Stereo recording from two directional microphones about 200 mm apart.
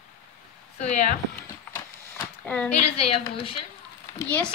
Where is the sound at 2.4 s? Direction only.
5° left (ahead or behind).